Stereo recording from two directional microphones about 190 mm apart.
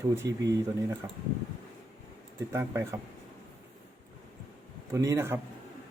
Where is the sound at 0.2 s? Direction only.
15° right (ahead or behind).